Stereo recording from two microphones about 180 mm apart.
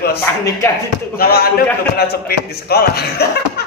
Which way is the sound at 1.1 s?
55° left (ahead or behind).